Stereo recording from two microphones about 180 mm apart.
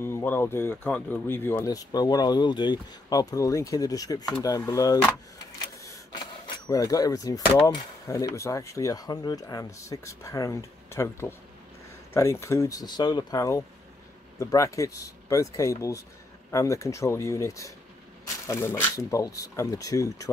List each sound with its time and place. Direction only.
0.0 s speech: 15° left (ahead or behind)
6.4 s speech: 20° left (ahead or behind)